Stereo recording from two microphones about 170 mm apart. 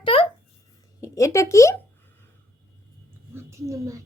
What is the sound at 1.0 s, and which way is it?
Speech, 20° left (ahead or behind).